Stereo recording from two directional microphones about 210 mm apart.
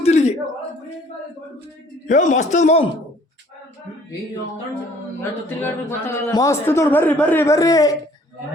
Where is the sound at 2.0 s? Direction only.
35° left (ahead or behind).